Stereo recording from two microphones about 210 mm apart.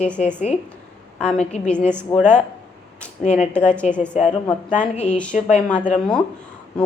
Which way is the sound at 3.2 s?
35° left (ahead or behind).